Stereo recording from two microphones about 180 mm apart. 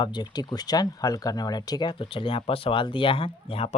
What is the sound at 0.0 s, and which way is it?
Speech, 25° left (ahead or behind).